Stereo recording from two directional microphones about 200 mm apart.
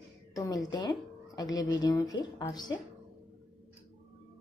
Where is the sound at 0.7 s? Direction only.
20° left (ahead or behind).